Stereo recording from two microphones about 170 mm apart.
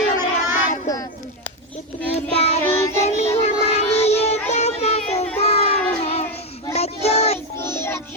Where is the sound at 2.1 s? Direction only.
40° left (ahead or behind).